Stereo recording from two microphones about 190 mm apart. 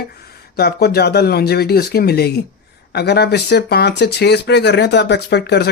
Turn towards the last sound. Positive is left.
turn(degrees=60)  # may be behind; listen again after turning